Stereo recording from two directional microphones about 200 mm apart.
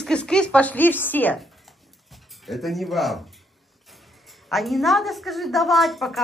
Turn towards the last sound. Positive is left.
turn(degrees=0)  # may be behind; listen again after turning